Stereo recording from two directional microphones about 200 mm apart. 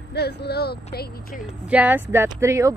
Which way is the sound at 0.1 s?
55° left (ahead or behind).